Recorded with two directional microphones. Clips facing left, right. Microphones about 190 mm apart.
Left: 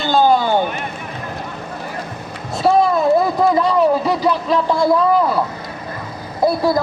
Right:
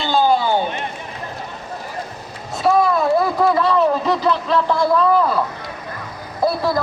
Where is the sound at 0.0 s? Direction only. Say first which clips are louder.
Left 2 dB; 45° left (ahead or behind).